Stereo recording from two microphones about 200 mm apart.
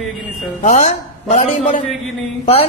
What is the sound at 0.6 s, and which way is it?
A woman's voice, 35° left (ahead or behind).